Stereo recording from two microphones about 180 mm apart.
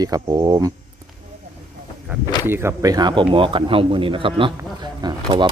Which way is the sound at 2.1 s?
10° right (ahead or behind).